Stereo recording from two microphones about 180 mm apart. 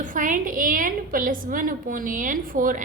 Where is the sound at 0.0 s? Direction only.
45° right (ahead or behind).